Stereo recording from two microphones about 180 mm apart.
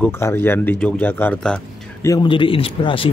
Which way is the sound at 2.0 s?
25° left (ahead or behind).